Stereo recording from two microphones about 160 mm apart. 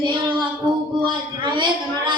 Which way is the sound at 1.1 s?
30° right (ahead or behind).